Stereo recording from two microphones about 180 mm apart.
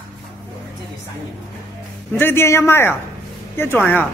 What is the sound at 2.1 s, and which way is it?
Speech, 10° left (ahead or behind).